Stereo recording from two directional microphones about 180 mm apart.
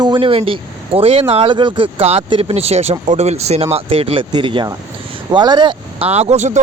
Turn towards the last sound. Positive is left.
turn(degrees=-40)  # may be behind; listen again after turning